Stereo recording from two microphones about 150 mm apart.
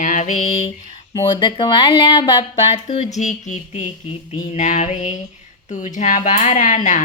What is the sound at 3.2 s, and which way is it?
A woman's voice, 50° left (ahead or behind).